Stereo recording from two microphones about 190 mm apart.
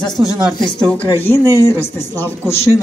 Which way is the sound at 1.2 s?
10° left (ahead or behind).